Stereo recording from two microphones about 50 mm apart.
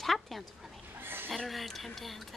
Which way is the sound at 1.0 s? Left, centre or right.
Right.